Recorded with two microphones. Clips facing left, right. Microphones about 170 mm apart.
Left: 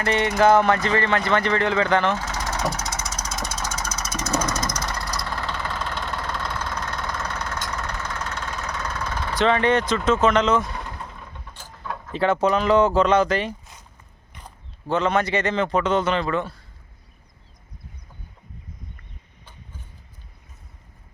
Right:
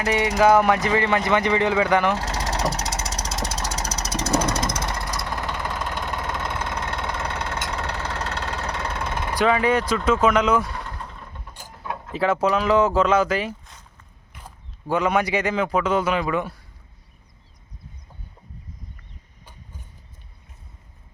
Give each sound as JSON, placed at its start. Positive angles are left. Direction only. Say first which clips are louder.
{"t": 0.0, "sound": "speech", "louder": "even", "side_deg": -5}
{"t": 2.1, "sound": "vehicle", "louder": "right 2 dB", "side_deg": -35}
{"t": 10.1, "sound": "speech", "louder": "even", "side_deg": -10}
{"t": 10.7, "sound": "vehicle", "louder": "even", "side_deg": 10}
{"t": 11.5, "sound": "mechanisms", "louder": "right 1 dB", "side_deg": -10}
{"t": 12.1, "sound": "a man's voice", "louder": "left 1 dB", "side_deg": -5}